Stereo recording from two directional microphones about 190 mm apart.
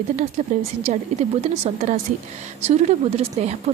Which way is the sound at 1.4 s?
35° right (ahead or behind).